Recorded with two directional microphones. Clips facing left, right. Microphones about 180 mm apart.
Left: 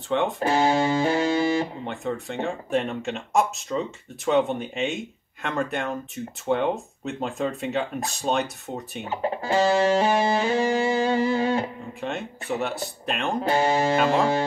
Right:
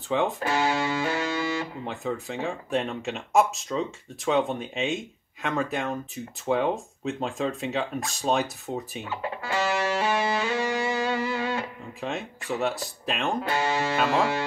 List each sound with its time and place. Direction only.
0.1 s speech: centre (ahead or behind)
0.4 s music: 35° left (ahead or behind)
1.9 s speech: centre (ahead or behind)
9.0 s speech: 35° left (ahead or behind)
12.0 s speech: centre (ahead or behind)
13.4 s music: 35° left (ahead or behind)